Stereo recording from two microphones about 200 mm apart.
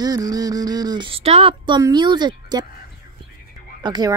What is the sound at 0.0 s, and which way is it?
Speech, 20° right (ahead or behind).